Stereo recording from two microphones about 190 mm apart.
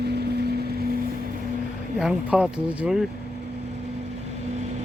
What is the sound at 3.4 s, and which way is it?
Vehicle, 35° right (ahead or behind).